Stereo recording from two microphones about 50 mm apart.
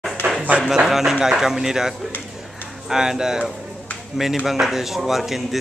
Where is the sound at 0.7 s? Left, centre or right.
Centre.